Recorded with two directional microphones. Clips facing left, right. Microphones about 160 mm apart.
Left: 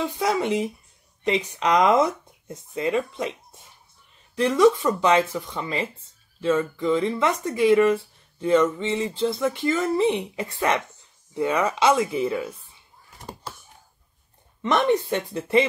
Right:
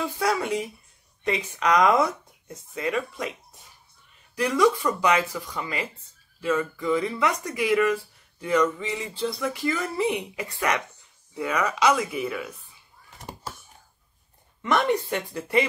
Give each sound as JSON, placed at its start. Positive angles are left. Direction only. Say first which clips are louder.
{"t": 0.0, "sound": "speech", "louder": "left 2 dB", "side_deg": 25}
{"t": 4.4, "sound": "speech", "louder": "left 4 dB", "side_deg": 25}
{"t": 14.6, "sound": "speech", "louder": "left 2 dB", "side_deg": 20}